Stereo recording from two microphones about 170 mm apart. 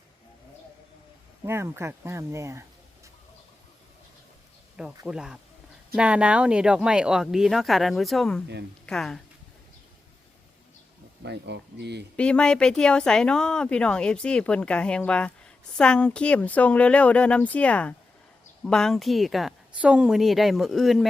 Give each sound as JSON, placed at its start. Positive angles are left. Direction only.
{"t": 1.5, "sound": "speech", "side_deg": -15}
{"t": 5.0, "sound": "speech", "side_deg": -5}
{"t": 11.2, "sound": "speech", "side_deg": -90}
{"t": 12.1, "sound": "speech", "side_deg": 5}